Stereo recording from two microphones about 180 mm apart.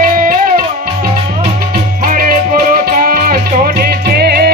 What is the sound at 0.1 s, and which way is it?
Music, 50° right (ahead or behind).